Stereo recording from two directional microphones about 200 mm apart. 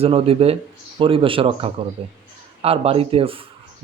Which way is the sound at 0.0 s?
30° right (ahead or behind).